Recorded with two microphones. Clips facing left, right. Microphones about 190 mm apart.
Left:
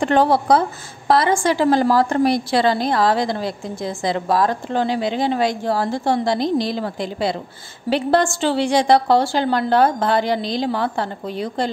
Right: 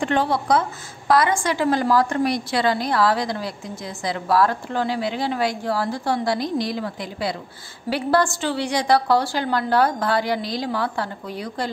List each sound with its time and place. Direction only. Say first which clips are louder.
0.0 s a woman's voice: left 5 dB; 40° left (ahead or behind)